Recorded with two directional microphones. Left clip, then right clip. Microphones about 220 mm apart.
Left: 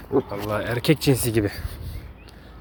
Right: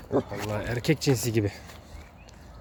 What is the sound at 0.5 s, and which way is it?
Speech, centre (ahead or behind).